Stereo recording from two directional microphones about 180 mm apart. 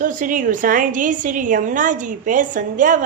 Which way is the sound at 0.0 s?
45° right (ahead or behind).